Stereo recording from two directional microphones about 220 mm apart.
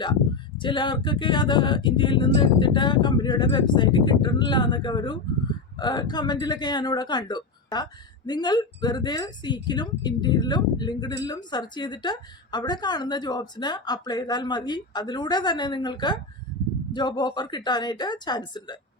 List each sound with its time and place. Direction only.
0.6 s a woman's voice: 20° left (ahead or behind)